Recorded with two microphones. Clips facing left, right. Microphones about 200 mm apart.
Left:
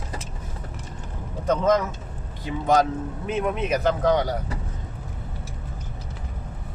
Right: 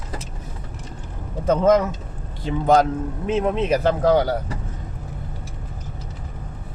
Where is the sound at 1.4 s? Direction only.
30° right (ahead or behind).